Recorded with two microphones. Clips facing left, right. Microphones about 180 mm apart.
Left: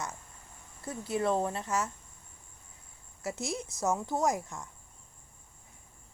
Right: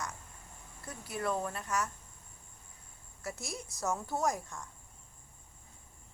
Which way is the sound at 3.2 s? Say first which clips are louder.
Left 6 dB; 25° left (ahead or behind).